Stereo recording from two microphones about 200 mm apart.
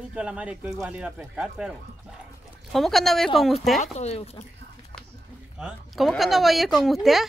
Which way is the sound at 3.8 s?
35° left (ahead or behind).